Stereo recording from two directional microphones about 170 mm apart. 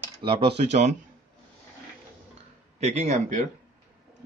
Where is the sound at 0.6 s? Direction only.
40° right (ahead or behind).